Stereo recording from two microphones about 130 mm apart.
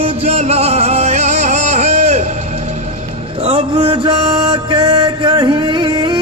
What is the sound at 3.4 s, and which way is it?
Music, 50° right (ahead or behind).